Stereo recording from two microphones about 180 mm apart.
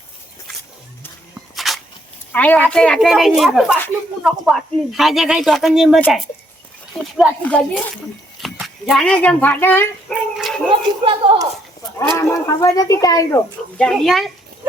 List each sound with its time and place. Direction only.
1.5 s a sound: centre (ahead or behind)
2.3 s speech: 10° left (ahead or behind)
7.0 s speech: 5° left (ahead or behind)
10.3 s dog: centre (ahead or behind)
10.7 s speech: 30° right (ahead or behind)
12.1 s speech: 20° left (ahead or behind)
13.7 s speech: centre (ahead or behind)